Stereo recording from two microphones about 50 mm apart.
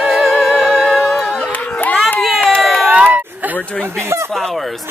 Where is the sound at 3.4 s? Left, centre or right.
Right.